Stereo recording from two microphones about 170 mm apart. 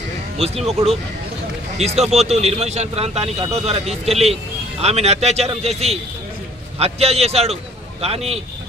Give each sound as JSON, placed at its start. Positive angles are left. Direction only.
{"t": 0.4, "sound": "speech", "side_deg": -35}
{"t": 1.8, "sound": "speech", "side_deg": -40}